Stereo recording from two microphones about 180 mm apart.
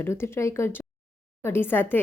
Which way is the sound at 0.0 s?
15° left (ahead or behind).